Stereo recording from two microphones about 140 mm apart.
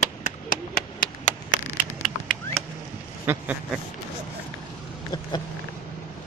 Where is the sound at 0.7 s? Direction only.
80° left.